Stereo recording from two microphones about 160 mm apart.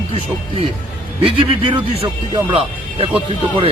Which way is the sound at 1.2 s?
30° right (ahead or behind).